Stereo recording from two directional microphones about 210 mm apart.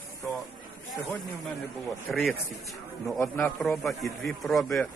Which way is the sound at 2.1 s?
Centre (ahead or behind).